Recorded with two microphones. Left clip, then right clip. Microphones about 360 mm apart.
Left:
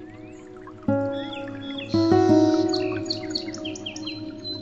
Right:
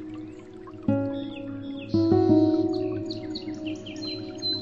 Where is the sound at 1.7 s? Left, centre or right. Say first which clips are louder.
Left 3 dB; left.